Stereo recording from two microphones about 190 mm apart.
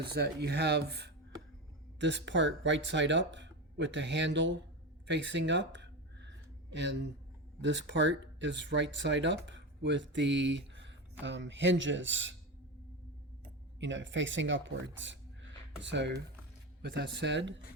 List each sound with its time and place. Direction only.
0.1 s speech: 60° right (ahead or behind)
5.0 s a sound: 65° right (ahead or behind)
7.6 s speech: 70° right (ahead or behind)
13.7 s speech: 75° right (ahead or behind)